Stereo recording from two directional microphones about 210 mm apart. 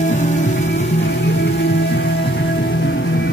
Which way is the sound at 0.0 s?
35° left (ahead or behind).